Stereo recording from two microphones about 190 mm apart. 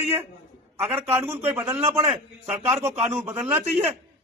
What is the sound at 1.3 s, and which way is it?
A man's voice, 10° right (ahead or behind).